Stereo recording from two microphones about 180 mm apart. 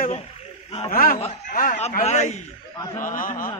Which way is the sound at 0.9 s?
55° left (ahead or behind).